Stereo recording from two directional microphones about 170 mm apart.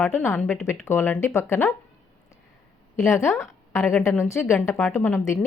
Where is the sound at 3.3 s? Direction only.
Centre (ahead or behind).